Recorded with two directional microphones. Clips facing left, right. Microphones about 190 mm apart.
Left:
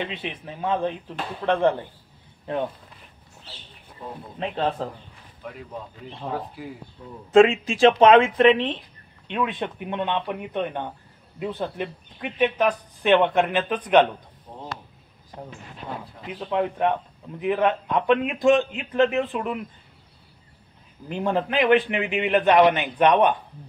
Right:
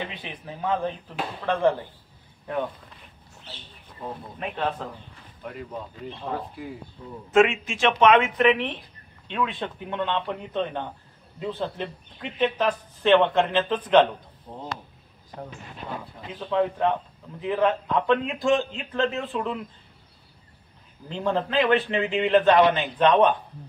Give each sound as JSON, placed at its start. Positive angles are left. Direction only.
{"t": 0.0, "sound": "speech", "side_deg": 25}
{"t": 4.4, "sound": "speech", "side_deg": 30}
{"t": 7.3, "sound": "speech", "side_deg": 35}
{"t": 16.5, "sound": "speech", "side_deg": 20}
{"t": 21.1, "sound": "speech", "side_deg": 15}